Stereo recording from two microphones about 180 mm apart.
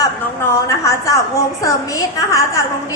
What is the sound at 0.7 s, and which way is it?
A woman's voice, 20° left (ahead or behind).